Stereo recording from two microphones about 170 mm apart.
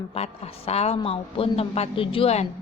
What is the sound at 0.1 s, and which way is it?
A woman's voice, 35° left (ahead or behind).